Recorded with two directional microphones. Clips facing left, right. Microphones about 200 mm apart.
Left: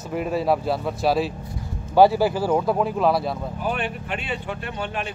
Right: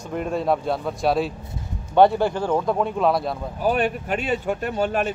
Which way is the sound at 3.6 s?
40° right (ahead or behind).